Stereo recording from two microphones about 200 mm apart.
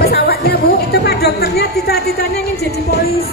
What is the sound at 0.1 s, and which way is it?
Music, 55° left (ahead or behind).